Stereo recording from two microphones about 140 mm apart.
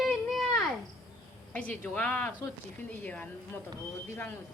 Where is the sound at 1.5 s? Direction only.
10° left (ahead or behind).